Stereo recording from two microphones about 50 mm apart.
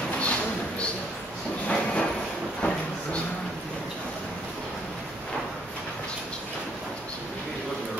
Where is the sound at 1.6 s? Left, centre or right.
Centre.